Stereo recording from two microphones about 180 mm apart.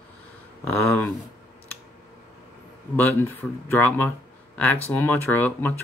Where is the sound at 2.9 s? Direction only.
10° left (ahead or behind).